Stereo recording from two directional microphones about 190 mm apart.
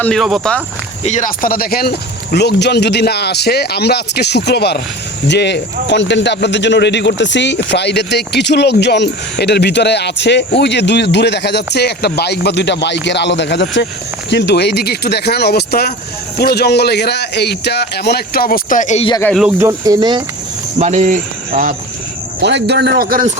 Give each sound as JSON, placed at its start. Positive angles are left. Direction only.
{"t": 0.0, "sound": "speech", "side_deg": 0}
{"t": 1.0, "sound": "a man's voice", "side_deg": 40}
{"t": 19.2, "sound": "speech", "side_deg": 5}
{"t": 19.5, "sound": "speech", "side_deg": -15}
{"t": 20.7, "sound": "speech", "side_deg": -35}
{"t": 22.4, "sound": "a man's voice", "side_deg": -65}